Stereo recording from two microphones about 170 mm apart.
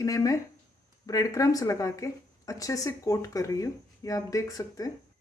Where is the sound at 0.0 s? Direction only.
20° left (ahead or behind).